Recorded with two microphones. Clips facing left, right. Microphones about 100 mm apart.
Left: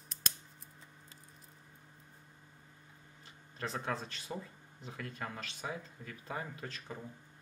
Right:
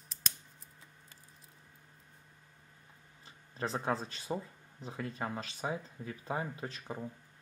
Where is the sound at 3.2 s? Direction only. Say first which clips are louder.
Right 4 dB; 30° right (ahead or behind).